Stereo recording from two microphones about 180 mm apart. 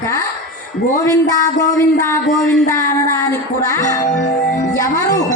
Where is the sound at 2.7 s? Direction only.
15° left (ahead or behind).